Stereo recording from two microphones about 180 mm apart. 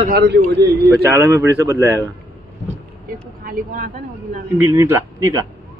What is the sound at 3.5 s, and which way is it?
Speech, 50° right (ahead or behind).